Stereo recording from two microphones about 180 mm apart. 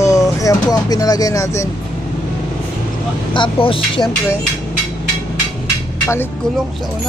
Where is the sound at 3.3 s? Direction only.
30° left (ahead or behind).